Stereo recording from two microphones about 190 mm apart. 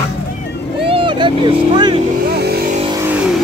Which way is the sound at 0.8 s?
25° right (ahead or behind).